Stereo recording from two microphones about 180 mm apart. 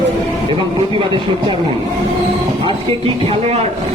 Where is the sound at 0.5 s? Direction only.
30° right (ahead or behind).